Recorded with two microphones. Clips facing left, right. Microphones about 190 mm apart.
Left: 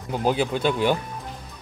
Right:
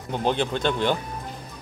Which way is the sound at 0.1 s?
5° left (ahead or behind).